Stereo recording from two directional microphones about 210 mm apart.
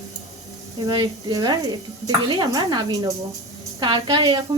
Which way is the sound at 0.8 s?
20° right (ahead or behind).